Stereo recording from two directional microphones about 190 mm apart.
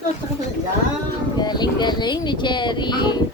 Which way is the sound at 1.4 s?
20° left (ahead or behind).